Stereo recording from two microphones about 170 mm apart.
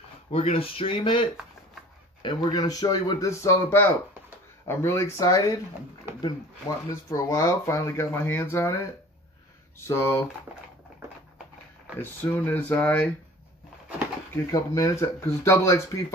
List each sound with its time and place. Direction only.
0.3 s speech: 35° left (ahead or behind)
2.2 s speech: 25° left (ahead or behind)
6.9 s speech: 15° left (ahead or behind)
12.0 s speech: 10° left (ahead or behind)
14.3 s speech: 20° left (ahead or behind)